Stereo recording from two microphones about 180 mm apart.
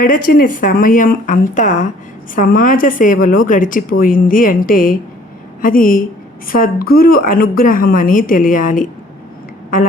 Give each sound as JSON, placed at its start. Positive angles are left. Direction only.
{"t": 0.0, "sound": "a woman's voice", "side_deg": 50}